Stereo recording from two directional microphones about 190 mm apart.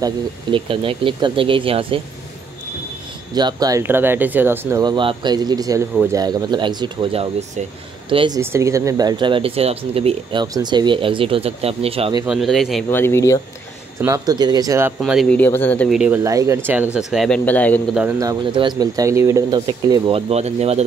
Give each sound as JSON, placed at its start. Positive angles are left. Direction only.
{"t": 0.0, "sound": "speech", "side_deg": -25}
{"t": 3.3, "sound": "speech", "side_deg": -20}
{"t": 8.4, "sound": "speech", "side_deg": -15}
{"t": 12.3, "sound": "speech", "side_deg": 0}
{"t": 12.9, "sound": "speech", "side_deg": 15}
{"t": 14.0, "sound": "speech", "side_deg": -20}
{"t": 15.0, "sound": "speech", "side_deg": 0}
{"t": 16.0, "sound": "speech", "side_deg": -10}
{"t": 18.2, "sound": "speech", "side_deg": -20}